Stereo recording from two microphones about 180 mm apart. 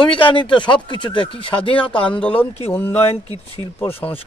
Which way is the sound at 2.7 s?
10° left (ahead or behind).